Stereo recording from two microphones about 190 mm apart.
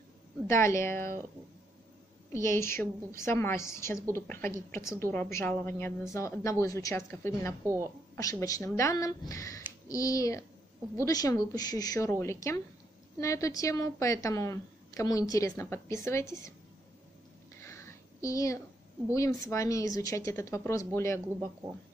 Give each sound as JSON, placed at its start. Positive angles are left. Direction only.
{"t": 0.5, "sound": "a woman's voice", "side_deg": 15}
{"t": 2.3, "sound": "a woman's voice", "side_deg": 15}
{"t": 7.6, "sound": "a woman's voice", "side_deg": -15}
{"t": 8.2, "sound": "a woman's voice", "side_deg": 15}
{"t": 17.6, "sound": "a sound", "side_deg": 15}
{"t": 19.1, "sound": "a woman's voice", "side_deg": 15}